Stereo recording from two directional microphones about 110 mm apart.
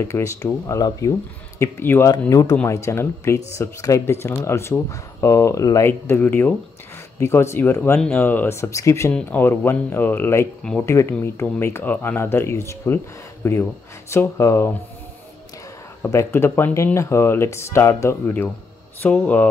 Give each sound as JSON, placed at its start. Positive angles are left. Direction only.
{"t": 0.0, "sound": "speech", "side_deg": 25}
{"t": 1.6, "sound": "speech", "side_deg": 20}
{"t": 5.9, "sound": "speech", "side_deg": 20}
{"t": 16.1, "sound": "speech", "side_deg": 25}
{"t": 19.0, "sound": "speech", "side_deg": 15}